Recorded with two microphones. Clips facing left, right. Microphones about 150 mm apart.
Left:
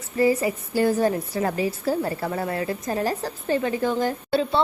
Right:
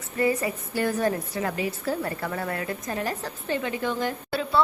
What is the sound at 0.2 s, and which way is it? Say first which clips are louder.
A woman's voice: left 4 dB; 30° left (ahead or behind).